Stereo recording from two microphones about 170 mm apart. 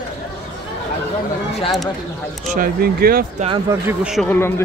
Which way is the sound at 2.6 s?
60° right (ahead or behind).